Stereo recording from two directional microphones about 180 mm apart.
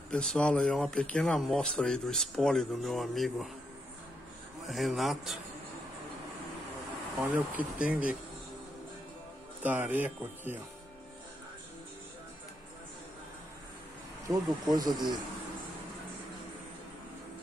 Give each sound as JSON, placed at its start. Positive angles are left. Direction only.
{"t": 0.1, "sound": "speech", "side_deg": 5}
{"t": 4.6, "sound": "speech", "side_deg": 0}
{"t": 7.2, "sound": "speech", "side_deg": -5}
{"t": 9.6, "sound": "speech", "side_deg": -10}
{"t": 14.2, "sound": "speech", "side_deg": -20}